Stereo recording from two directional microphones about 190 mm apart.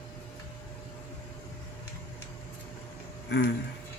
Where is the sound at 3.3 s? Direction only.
65° left (ahead or behind).